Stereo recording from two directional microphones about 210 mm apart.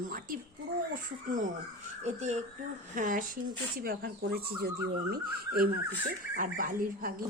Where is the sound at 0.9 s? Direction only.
40° right (ahead or behind).